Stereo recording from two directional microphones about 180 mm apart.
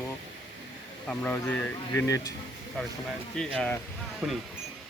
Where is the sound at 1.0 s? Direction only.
5° left (ahead or behind).